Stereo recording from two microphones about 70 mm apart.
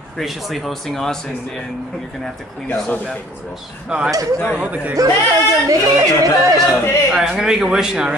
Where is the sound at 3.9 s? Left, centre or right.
Centre.